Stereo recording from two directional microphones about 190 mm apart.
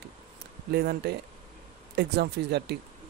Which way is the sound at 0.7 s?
60° right (ahead or behind).